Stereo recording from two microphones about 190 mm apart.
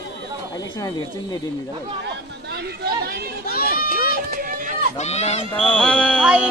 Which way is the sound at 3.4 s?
55° left (ahead or behind).